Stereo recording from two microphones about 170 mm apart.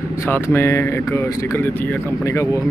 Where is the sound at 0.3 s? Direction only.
15° left (ahead or behind).